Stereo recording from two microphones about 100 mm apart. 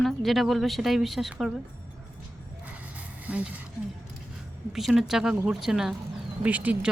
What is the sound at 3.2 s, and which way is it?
Speech, 15° right (ahead or behind).